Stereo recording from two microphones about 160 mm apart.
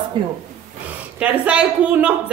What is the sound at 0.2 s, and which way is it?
Speech, 35° right (ahead or behind).